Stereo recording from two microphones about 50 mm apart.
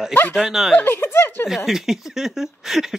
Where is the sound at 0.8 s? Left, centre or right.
Left.